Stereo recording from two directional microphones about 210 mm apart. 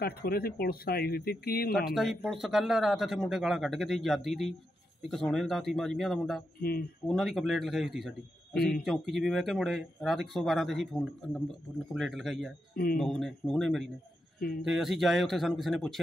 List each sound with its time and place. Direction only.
0.0 s speech: 45° left (ahead or behind)
1.9 s speech: centre (ahead or behind)
6.6 s speech: 45° left (ahead or behind)
7.1 s speech: centre (ahead or behind)